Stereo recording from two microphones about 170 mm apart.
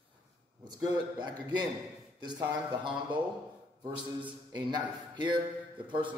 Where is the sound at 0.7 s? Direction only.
25° right (ahead or behind).